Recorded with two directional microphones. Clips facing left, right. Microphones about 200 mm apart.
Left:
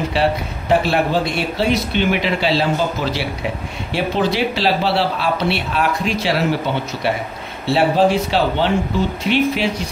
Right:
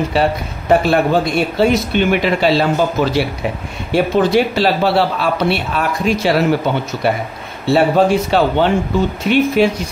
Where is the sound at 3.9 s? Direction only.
45° right (ahead or behind).